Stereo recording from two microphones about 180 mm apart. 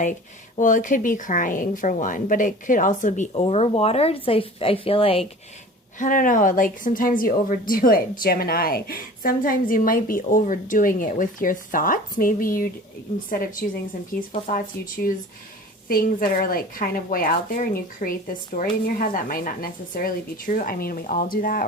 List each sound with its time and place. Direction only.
0.5 s a woman's voice: 45° left (ahead or behind); by 5.3 s 30° left (ahead or behind)
6.0 s a woman's voice: 50° left (ahead or behind)
14.5 s a woman's voice: 50° left (ahead or behind)